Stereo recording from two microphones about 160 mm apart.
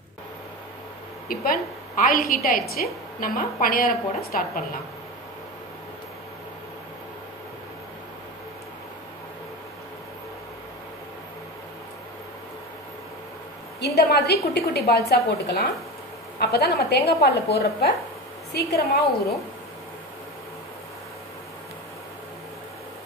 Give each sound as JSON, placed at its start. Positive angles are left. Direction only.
{"t": 1.3, "sound": "a woman's voice", "side_deg": 65}
{"t": 13.7, "sound": "a woman's voice", "side_deg": 90}